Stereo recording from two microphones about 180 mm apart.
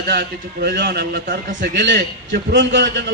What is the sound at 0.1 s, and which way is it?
A man's voice, 65° right (ahead or behind).